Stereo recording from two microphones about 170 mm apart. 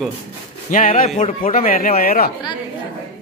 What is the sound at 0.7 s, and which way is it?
Speech, 50° left (ahead or behind).